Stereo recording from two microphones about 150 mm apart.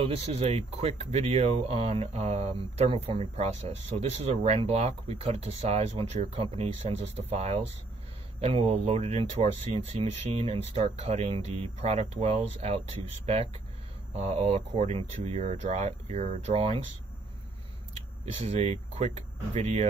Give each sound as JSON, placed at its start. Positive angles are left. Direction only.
{"t": 0.0, "sound": "speech", "side_deg": -40}
{"t": 18.5, "sound": "speech", "side_deg": -45}